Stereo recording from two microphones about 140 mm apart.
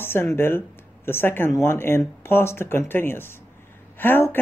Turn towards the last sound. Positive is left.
turn(degrees=15)  # may be behind; listen again after turning